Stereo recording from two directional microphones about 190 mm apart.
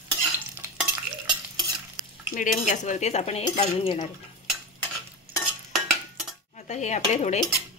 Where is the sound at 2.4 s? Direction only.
40° left (ahead or behind).